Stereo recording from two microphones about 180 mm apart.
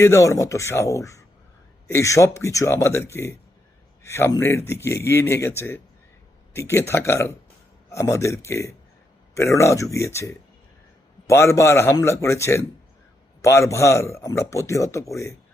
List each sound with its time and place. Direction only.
0.0 s a man's voice: 15° left (ahead or behind)